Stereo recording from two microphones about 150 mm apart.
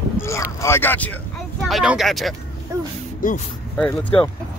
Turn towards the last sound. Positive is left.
turn(degrees=10)  # may be behind; listen again after turning